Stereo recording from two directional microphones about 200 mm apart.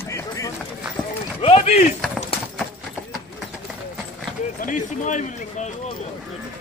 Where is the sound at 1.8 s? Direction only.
Centre (ahead or behind).